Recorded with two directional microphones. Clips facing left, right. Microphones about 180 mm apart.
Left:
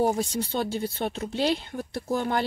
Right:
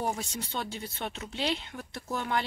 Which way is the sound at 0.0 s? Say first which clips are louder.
Left 9 dB; 35° left (ahead or behind).